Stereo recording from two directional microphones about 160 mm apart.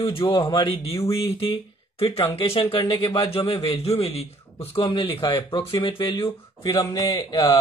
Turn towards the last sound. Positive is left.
turn(degrees=30)  # may be behind; listen again after turning